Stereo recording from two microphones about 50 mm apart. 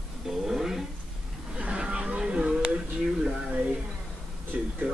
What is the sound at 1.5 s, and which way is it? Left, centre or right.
Vehicle, centre.